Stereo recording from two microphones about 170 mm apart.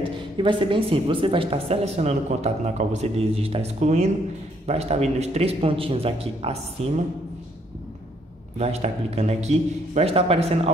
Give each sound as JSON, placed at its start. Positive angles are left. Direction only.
{"t": 0.0, "sound": "a woman's voice", "side_deg": -30}
{"t": 8.5, "sound": "a woman's voice", "side_deg": -40}